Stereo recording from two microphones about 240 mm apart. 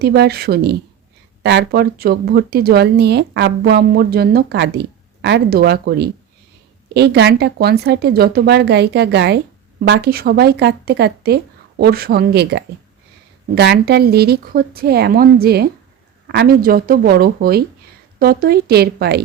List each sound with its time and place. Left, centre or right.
0.0 s a woman's voice: right